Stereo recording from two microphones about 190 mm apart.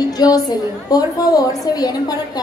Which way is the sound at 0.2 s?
20° left (ahead or behind).